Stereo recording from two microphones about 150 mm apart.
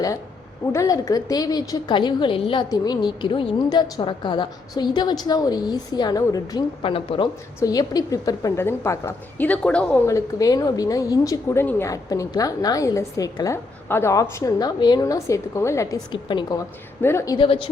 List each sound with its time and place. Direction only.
0.7 s a woman's voice: 20° left (ahead or behind)
6.8 s speech: 35° left (ahead or behind)
7.6 s a woman's voice: 25° left (ahead or behind); by 10.0 s 10° left (ahead or behind)
10.1 s a woman's voice: 20° left (ahead or behind)
17.0 s a woman's voice: 15° left (ahead or behind)
17.3 s speech: 35° left (ahead or behind)